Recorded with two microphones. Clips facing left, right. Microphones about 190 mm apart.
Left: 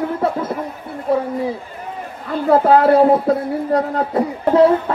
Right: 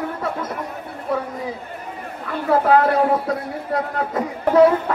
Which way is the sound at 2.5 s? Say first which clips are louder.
Left 4 dB; 30° left (ahead or behind).